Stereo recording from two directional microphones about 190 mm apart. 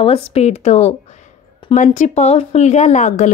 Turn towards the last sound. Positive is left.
turn(degrees=35)  # may be behind; listen again after turning